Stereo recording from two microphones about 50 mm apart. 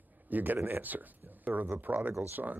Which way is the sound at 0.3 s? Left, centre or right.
Right.